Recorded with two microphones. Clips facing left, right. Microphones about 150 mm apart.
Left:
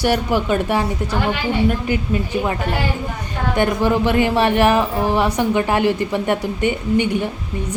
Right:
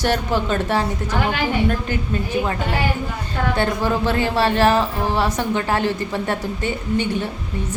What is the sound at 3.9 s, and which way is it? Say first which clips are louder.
A woman's voice: left 4 dB; 15° left (ahead or behind).